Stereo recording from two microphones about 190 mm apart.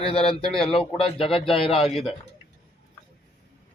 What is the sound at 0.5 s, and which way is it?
Speech, 5° left (ahead or behind).